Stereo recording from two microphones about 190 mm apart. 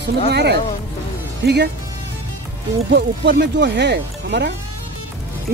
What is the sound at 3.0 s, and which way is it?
Speech, 60° right (ahead or behind).